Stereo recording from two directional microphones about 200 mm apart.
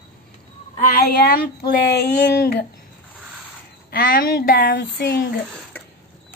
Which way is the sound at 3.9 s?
50° left (ahead or behind).